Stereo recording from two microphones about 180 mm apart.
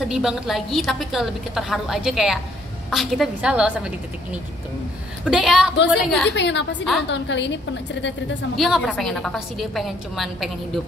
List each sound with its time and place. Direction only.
0.1 s a woman's voice: 5° right (ahead or behind)
5.2 s a woman's voice: 5° right (ahead or behind)
6.3 s a woman's voice: 80° left
8.5 s a woman's voice: centre (ahead or behind)